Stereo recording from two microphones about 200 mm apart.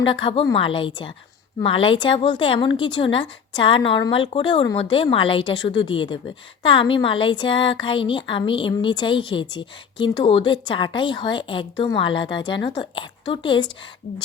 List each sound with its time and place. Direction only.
0.0 s a woman's voice: 25° left (ahead or behind)